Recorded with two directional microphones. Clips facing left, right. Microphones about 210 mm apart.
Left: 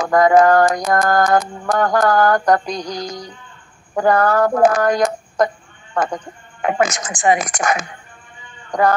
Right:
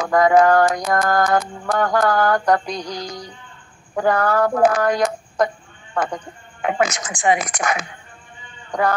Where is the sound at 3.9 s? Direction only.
45° left (ahead or behind).